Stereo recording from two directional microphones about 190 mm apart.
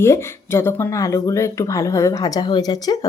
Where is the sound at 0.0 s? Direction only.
15° left (ahead or behind).